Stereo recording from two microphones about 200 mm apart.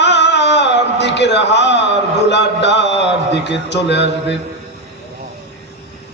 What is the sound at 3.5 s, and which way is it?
Speech, 60° left (ahead or behind).